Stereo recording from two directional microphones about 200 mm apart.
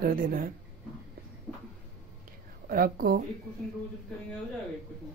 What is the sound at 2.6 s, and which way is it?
Speech, 45° right (ahead or behind).